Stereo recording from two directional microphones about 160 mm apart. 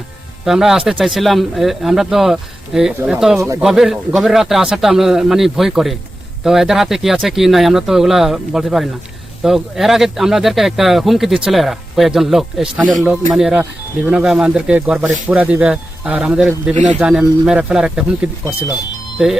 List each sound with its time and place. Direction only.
0.4 s speech: centre (ahead or behind)
16.7 s speech: 50° right (ahead or behind)
17.0 s speech: 5° right (ahead or behind)